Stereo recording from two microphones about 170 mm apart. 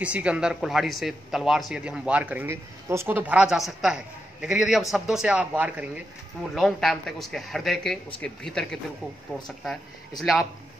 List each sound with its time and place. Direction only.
0.0 s speech: 5° right (ahead or behind)
9.7 s speech: centre (ahead or behind)